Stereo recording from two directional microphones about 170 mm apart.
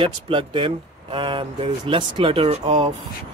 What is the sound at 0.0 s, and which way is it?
Speech, 30° right (ahead or behind).